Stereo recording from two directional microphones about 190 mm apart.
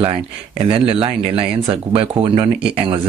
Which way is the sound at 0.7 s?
30° right (ahead or behind).